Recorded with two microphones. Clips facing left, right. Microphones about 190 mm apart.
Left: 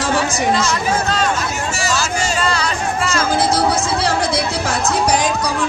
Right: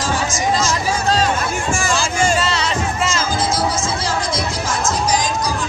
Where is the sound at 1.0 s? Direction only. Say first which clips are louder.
Right 1 dB; 35° right (ahead or behind).